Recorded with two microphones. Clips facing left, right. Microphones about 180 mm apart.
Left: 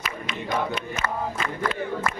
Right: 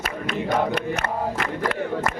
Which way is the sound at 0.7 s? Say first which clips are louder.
Right 4 dB; 70° right (ahead or behind).